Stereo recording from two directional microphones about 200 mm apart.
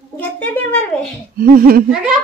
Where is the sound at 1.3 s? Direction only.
45° right (ahead or behind).